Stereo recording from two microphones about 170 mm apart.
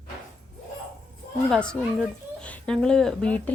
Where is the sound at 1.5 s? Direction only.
5° left (ahead or behind).